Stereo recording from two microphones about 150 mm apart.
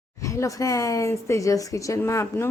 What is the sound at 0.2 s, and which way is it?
Speech, 20° left (ahead or behind).